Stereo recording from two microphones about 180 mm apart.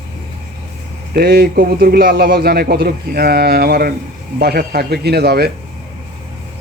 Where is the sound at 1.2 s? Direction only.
55° right (ahead or behind).